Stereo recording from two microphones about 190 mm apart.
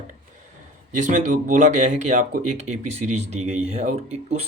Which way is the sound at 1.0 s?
40° right (ahead or behind).